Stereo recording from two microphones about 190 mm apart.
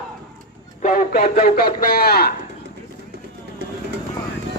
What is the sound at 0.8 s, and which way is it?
Speech, 40° left (ahead or behind).